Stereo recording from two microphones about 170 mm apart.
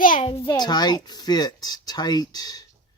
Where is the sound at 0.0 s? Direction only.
55° left (ahead or behind).